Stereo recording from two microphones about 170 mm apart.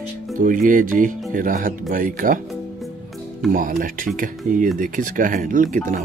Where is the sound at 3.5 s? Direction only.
50° right (ahead or behind).